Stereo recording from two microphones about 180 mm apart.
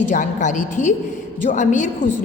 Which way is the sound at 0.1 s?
45° left (ahead or behind).